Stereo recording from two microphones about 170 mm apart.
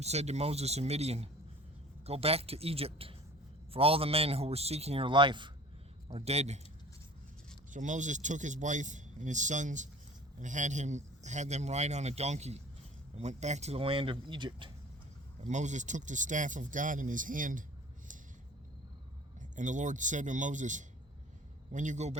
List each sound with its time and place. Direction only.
0.0 s a man's voice: 40° right (ahead or behind)
7.7 s a man's voice: 45° right (ahead or behind); by 14.7 s 30° right (ahead or behind)
15.4 s a man's voice: 45° right (ahead or behind)
19.5 s a man's voice: 45° right (ahead or behind)